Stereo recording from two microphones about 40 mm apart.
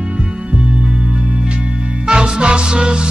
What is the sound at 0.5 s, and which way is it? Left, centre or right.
Music, right.